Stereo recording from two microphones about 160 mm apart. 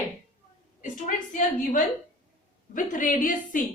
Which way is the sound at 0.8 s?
55° left (ahead or behind).